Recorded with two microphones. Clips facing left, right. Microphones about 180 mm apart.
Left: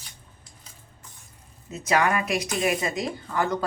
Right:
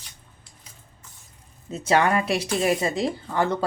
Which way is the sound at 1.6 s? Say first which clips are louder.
Right 2 dB; 30° right (ahead or behind).